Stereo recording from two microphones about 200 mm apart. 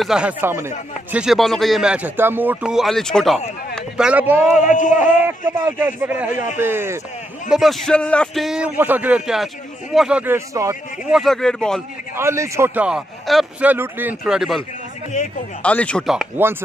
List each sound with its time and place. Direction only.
0.0 s speech: 5° right (ahead or behind)
4.6 s speech: 40° left (ahead or behind)
4.9 s a man's voice: 10° right (ahead or behind)
6.3 s speech: 40° left (ahead or behind)
6.6 s a man's voice: 10° right (ahead or behind)
11.1 s speech: centre (ahead or behind)
12.2 s a man's voice: 15° right (ahead or behind)
15.6 s speech: 5° left (ahead or behind)